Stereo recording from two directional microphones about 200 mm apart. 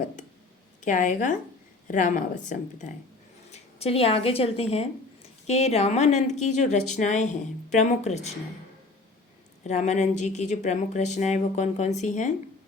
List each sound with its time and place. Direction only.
0.8 s speech: 40° left (ahead or behind)
9.6 s speech: 35° left (ahead or behind)